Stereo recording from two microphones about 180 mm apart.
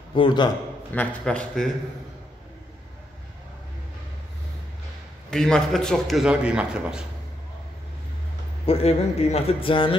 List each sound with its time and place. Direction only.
0.1 s a man's voice: 25° left (ahead or behind)
0.9 s a man's voice: 5° left (ahead or behind)
5.3 s a man's voice: 5° left (ahead or behind)
8.6 s speech: 35° left (ahead or behind)